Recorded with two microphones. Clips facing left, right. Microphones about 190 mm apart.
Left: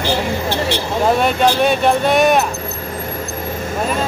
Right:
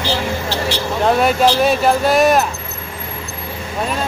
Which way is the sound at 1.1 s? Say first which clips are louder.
Right 3 dB; centre (ahead or behind).